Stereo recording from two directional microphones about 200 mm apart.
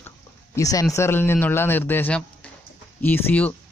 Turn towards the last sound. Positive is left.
turn(degrees=10)  # may be behind; listen again after turning